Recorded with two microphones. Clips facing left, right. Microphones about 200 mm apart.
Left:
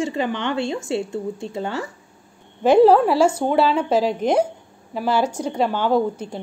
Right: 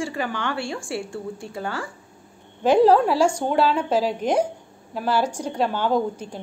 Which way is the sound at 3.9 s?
10° right (ahead or behind).